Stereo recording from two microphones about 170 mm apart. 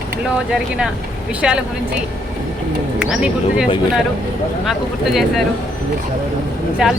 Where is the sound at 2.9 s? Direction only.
5° right (ahead or behind).